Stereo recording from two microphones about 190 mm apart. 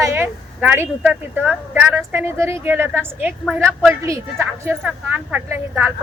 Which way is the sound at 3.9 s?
15° right (ahead or behind).